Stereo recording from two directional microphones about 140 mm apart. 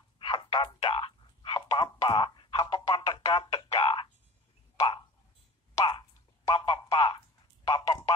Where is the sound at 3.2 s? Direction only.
40° left (ahead or behind).